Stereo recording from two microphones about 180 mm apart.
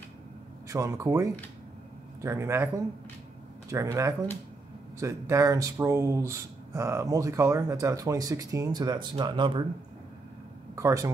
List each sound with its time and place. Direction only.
0.7 s speech: 15° right (ahead or behind)
10.8 s speech: 15° right (ahead or behind)